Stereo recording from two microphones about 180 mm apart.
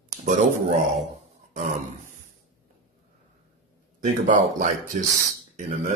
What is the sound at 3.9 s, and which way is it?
Speech, 45° right (ahead or behind).